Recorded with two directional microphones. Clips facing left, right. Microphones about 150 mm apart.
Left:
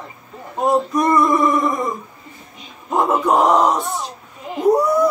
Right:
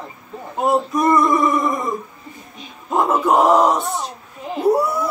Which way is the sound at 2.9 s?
Centre (ahead or behind).